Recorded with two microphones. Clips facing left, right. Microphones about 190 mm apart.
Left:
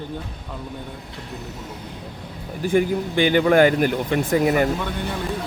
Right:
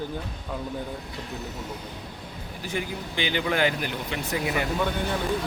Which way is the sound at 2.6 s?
50° left (ahead or behind).